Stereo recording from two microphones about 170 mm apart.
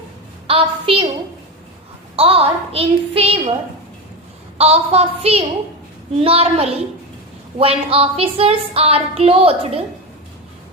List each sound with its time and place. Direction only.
0.4 s a woman's voice: 35° right (ahead or behind)
2.1 s speech: 35° right (ahead or behind)
4.5 s speech: 35° right (ahead or behind)